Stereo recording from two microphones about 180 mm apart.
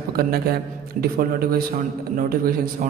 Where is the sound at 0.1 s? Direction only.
55° right (ahead or behind).